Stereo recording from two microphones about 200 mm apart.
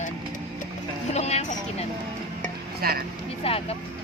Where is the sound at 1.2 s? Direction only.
35° left (ahead or behind).